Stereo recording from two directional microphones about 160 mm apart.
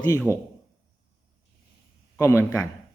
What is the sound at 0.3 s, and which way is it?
Speech, 15° right (ahead or behind).